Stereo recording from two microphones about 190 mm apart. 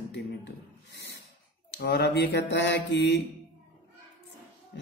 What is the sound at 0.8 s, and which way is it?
Snort, 60° left (ahead or behind).